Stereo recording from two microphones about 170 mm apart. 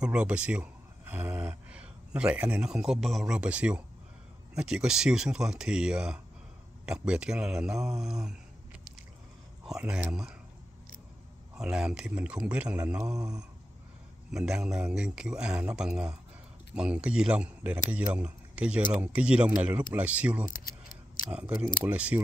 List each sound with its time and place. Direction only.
0.0 s speech: 5° right (ahead or behind)
9.7 s speech: 5° right (ahead or behind)
11.5 s speech: 5° right (ahead or behind)
14.3 s speech: 5° right (ahead or behind)